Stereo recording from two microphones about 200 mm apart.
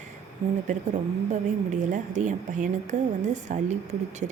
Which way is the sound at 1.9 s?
40° right (ahead or behind).